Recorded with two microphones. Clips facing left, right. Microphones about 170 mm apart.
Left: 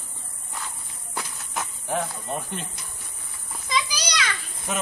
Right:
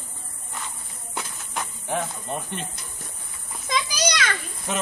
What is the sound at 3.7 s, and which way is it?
Children playing, 50° right (ahead or behind).